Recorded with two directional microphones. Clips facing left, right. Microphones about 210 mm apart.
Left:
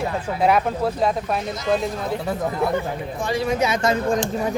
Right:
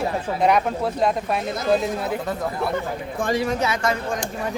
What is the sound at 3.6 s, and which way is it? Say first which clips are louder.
Speech: left 3 dB; 20° left (ahead or behind).